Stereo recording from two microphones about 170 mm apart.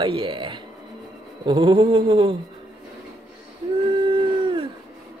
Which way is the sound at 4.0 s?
30° right (ahead or behind).